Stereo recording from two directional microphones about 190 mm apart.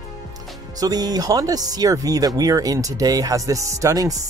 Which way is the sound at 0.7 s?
20° right (ahead or behind).